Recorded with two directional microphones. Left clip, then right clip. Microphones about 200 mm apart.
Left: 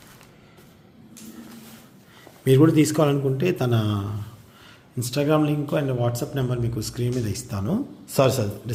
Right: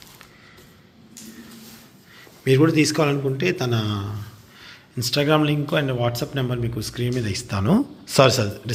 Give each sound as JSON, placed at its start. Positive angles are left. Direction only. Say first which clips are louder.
{"t": 2.4, "sound": "a man's voice", "louder": "even", "side_deg": 15}
{"t": 4.6, "sound": "a sound", "louder": "right 2 dB", "side_deg": 15}
{"t": 5.0, "sound": "speech", "louder": "right 2 dB", "side_deg": -5}